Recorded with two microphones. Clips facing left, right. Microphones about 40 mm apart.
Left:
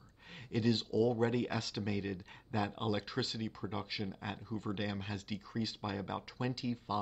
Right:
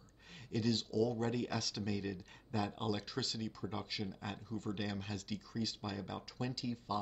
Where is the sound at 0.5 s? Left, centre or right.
Left.